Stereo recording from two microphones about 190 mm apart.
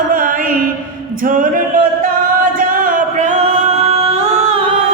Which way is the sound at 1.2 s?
45° right (ahead or behind).